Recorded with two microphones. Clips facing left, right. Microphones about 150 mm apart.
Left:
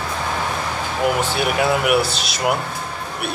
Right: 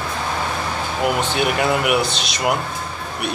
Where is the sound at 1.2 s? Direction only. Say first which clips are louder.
Even; 10° left (ahead or behind).